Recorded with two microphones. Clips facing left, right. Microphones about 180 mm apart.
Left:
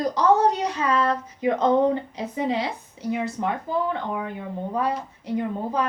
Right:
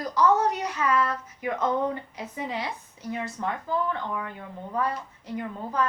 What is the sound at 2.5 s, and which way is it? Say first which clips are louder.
Speech: left 5 dB; 75° left (ahead or behind).